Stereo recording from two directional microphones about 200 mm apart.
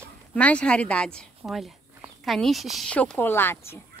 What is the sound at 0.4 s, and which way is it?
A woman's voice, 5° left (ahead or behind).